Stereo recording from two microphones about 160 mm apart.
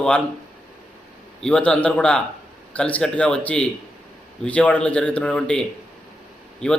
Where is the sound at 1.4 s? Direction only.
5° left (ahead or behind).